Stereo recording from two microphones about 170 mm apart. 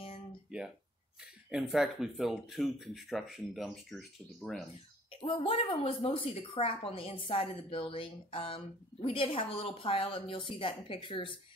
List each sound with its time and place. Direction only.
1.2 s speech: centre (ahead or behind)
5.2 s speech: 30° left (ahead or behind)